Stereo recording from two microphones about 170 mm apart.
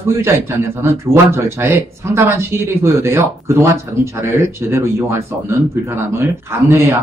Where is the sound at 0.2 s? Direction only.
15° right (ahead or behind).